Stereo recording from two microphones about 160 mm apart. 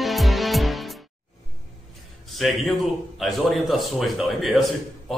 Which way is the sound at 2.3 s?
Centre (ahead or behind).